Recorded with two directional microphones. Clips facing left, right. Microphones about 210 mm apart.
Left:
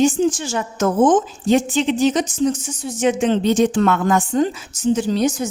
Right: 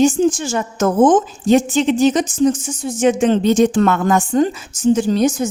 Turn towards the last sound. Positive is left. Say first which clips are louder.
# right 3 dB
turn(degrees=-50)  # may be behind; listen again after turning